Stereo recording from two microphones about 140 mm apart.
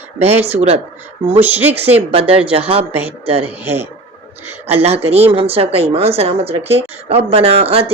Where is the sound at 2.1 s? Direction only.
40° right (ahead or behind).